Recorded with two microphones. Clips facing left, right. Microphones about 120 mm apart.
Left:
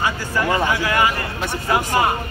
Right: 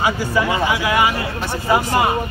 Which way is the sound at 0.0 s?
15° right (ahead or behind).